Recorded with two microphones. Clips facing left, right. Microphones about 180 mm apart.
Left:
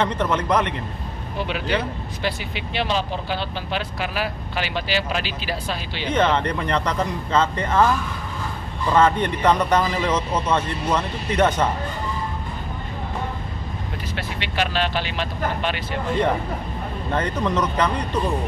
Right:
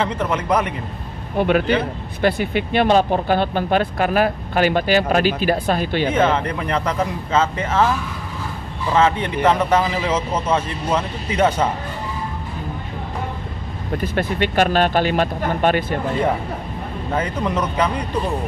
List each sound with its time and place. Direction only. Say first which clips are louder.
0.0 s a man's voice: even; 10° right (ahead or behind)
2.2 s speech: right 9 dB; 55° right (ahead or behind)
6.1 s a man's voice: left 2 dB; 5° right (ahead or behind)
8.9 s a man's voice: right 1 dB; 5° right (ahead or behind)
13.9 s speech: right 12 dB; 50° right (ahead or behind)
17.1 s a man's voice: right 1 dB; 10° right (ahead or behind)